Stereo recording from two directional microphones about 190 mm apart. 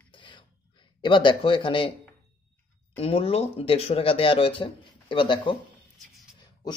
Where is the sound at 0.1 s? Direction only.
25° left (ahead or behind).